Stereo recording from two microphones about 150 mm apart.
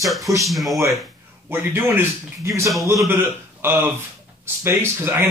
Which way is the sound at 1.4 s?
15° right (ahead or behind).